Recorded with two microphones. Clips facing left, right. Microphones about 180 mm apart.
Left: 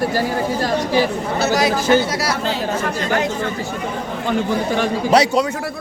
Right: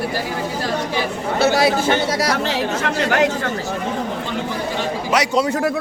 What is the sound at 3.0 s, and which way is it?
Speech, 70° right (ahead or behind).